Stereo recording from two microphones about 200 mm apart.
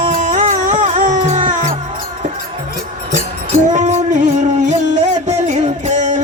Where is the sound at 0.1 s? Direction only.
40° right (ahead or behind).